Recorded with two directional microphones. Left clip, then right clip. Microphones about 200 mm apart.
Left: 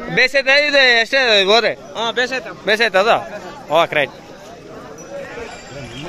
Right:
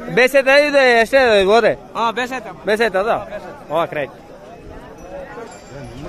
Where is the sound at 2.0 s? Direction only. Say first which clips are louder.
Even; 60° right (ahead or behind).